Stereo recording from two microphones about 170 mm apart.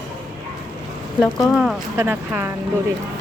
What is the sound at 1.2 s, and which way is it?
Speech, centre (ahead or behind).